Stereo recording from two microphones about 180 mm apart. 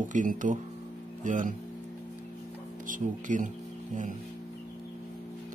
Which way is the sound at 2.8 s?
45° right (ahead or behind).